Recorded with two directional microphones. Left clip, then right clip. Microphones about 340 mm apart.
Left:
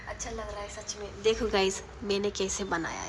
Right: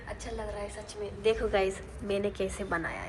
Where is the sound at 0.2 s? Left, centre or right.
Centre.